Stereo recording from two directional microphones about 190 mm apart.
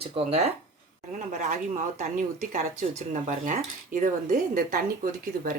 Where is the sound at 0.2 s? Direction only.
30° right (ahead or behind).